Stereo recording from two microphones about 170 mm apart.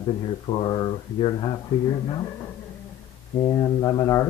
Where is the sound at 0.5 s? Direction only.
30° left (ahead or behind).